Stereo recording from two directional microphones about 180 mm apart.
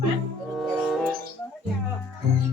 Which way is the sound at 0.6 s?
Centre (ahead or behind).